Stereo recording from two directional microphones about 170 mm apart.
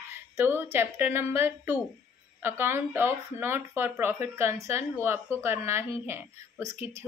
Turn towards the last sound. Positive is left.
turn(degrees=-15)  # may be behind; listen again after turning